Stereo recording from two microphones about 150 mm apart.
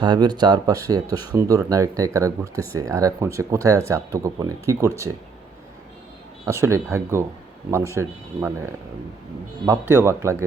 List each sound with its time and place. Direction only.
0.0 s speech: 30° right (ahead or behind)
6.4 s speech: 20° right (ahead or behind)